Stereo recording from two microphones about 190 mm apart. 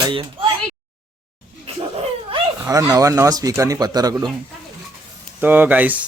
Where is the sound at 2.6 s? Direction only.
15° right (ahead or behind).